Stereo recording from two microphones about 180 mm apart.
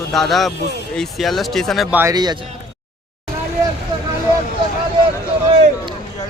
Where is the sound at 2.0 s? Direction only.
20° right (ahead or behind).